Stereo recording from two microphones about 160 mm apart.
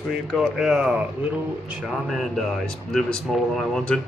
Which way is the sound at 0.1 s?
Centre (ahead or behind).